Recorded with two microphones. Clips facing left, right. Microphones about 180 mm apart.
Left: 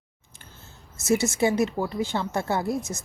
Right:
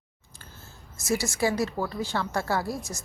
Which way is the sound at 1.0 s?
20° left (ahead or behind).